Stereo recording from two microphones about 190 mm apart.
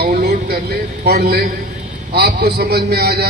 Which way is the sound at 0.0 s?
55° right (ahead or behind).